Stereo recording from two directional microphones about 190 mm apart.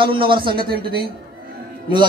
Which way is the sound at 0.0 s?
25° right (ahead or behind).